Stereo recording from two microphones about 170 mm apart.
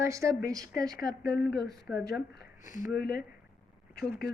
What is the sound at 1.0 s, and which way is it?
Speech, 70° left (ahead or behind).